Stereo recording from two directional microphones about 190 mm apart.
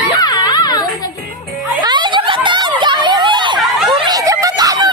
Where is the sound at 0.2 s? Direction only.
20° left (ahead or behind).